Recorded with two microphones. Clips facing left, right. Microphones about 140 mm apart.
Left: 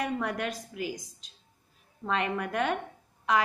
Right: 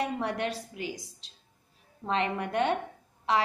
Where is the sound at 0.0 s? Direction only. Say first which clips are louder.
Right 1 dB; 30° right (ahead or behind).